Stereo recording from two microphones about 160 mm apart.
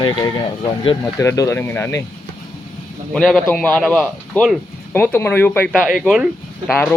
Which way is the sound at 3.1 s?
5° left (ahead or behind).